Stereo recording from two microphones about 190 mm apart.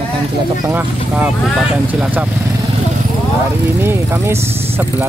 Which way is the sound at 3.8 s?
10° right (ahead or behind).